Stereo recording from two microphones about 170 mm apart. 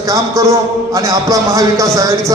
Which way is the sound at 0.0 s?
20° right (ahead or behind).